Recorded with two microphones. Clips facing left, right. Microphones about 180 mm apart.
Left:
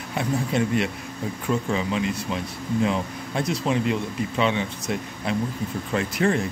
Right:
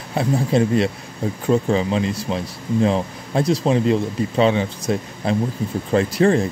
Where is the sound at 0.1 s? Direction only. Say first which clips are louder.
Right 6 dB; 35° right (ahead or behind).